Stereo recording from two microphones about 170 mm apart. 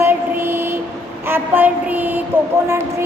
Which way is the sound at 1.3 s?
10° right (ahead or behind).